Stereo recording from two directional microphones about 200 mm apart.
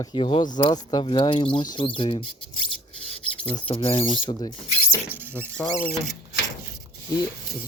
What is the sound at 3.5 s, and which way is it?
Speech, 25° left (ahead or behind).